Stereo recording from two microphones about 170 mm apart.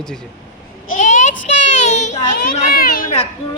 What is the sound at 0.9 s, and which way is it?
Child singing, 45° left (ahead or behind).